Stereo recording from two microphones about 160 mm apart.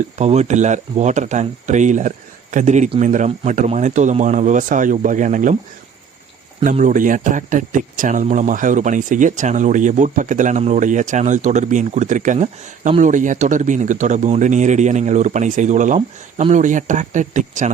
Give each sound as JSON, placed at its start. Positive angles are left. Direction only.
{"t": 0.0, "sound": "speech", "side_deg": -45}
{"t": 6.7, "sound": "speech", "side_deg": -55}